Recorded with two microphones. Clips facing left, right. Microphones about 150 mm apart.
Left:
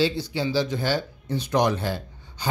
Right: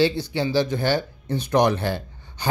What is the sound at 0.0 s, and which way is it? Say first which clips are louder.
Speech: right 3 dB; 60° right (ahead or behind).